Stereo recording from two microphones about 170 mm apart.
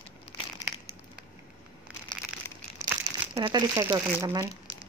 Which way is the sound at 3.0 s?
25° right (ahead or behind).